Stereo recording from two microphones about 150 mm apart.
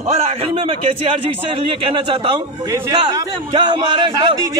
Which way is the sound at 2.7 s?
25° right (ahead or behind).